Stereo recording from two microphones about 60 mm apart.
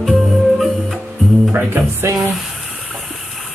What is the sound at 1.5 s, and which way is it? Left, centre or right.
Speech, right.